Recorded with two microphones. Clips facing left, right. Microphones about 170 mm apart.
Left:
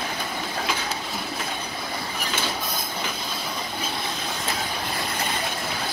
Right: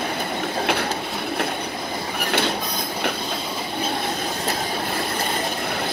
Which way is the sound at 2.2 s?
65° right (ahead or behind).